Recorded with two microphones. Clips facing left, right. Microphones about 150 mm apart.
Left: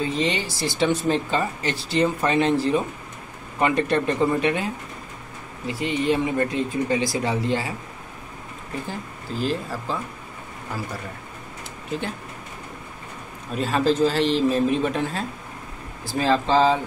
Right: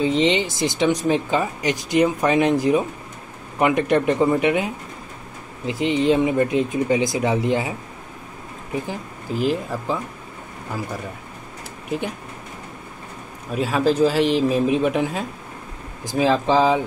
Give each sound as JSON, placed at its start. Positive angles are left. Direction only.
{"t": 0.0, "sound": "speech", "side_deg": -20}
{"t": 8.8, "sound": "speech", "side_deg": -15}
{"t": 11.9, "sound": "speech", "side_deg": -15}
{"t": 13.5, "sound": "speech", "side_deg": -10}